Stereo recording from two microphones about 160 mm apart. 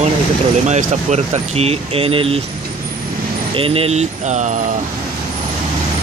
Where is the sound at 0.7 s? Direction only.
45° right (ahead or behind).